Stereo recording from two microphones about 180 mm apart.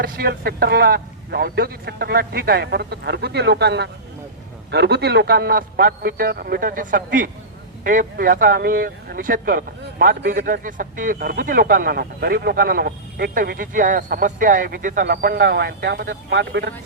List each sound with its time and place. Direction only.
0.0 s speech: 55° right (ahead or behind)
10.3 s speech: 50° right (ahead or behind); by 16.7 s 70° right (ahead or behind)